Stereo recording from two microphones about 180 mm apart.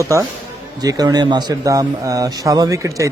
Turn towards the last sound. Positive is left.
turn(degrees=-15)  # may be behind; listen again after turning